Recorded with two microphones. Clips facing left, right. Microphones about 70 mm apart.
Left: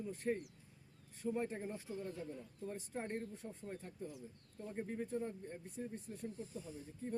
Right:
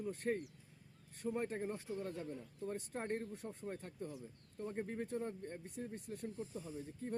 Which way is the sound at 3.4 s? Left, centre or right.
Right.